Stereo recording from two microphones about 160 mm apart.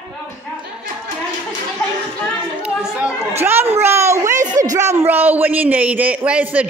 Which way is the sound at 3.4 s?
15° right (ahead or behind).